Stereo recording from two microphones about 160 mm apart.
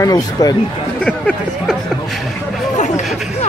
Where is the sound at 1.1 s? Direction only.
5° left (ahead or behind).